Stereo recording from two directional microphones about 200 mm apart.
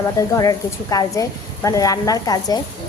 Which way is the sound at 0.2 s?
15° left (ahead or behind).